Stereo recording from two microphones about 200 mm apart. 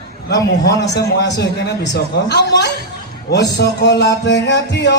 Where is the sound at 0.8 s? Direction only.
55° left (ahead or behind).